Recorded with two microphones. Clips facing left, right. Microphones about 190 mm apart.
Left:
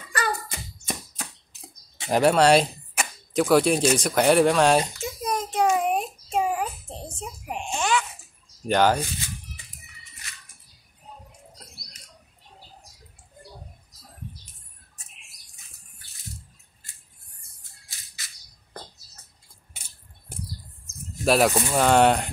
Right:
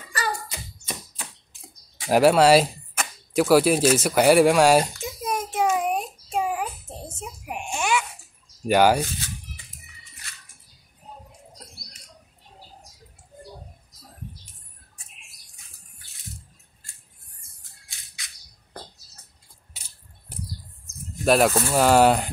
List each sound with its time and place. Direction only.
0.1 s hands: 55° left (ahead or behind)
2.0 s speech: 5° right (ahead or behind)
3.3 s a sound: 5° right (ahead or behind)
7.2 s baby cry: 10° right (ahead or behind)
8.6 s speech: 10° right (ahead or behind)
17.8 s music: 5° left (ahead or behind)
19.7 s a sound: 50° left (ahead or behind)
21.2 s speech: centre (ahead or behind)